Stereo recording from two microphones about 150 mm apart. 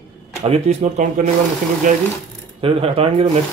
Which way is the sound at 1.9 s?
60° right (ahead or behind).